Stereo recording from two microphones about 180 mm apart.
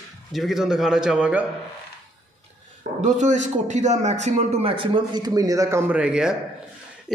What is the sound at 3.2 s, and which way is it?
A man's voice, 40° right (ahead or behind).